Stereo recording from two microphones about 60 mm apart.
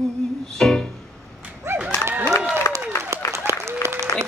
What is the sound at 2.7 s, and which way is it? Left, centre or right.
Applause, left.